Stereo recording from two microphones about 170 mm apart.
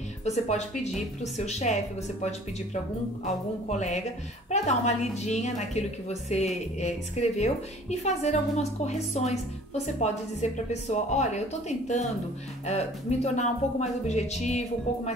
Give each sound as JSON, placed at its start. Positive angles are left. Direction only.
{"t": 0.2, "sound": "a woman's voice", "side_deg": 40}
{"t": 3.3, "sound": "a woman's voice", "side_deg": 45}
{"t": 12.6, "sound": "a woman's voice", "side_deg": 40}